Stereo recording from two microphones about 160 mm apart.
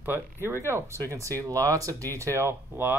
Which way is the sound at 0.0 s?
15° right (ahead or behind).